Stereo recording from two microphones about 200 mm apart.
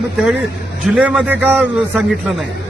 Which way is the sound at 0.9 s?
5° right (ahead or behind).